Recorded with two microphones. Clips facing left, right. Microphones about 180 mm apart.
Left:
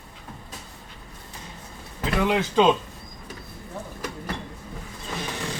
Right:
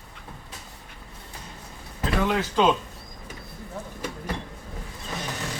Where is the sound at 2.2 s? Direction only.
15° left (ahead or behind).